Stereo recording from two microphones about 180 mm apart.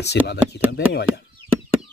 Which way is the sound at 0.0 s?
70° left (ahead or behind).